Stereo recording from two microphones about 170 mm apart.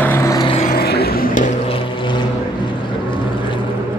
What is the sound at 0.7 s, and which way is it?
Vehicle, 65° left (ahead or behind).